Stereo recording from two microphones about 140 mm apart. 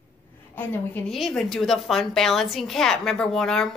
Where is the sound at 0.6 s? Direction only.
10° left (ahead or behind).